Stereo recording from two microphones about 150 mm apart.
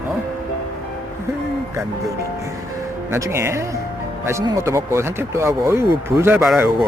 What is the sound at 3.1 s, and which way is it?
Speech, 20° right (ahead or behind).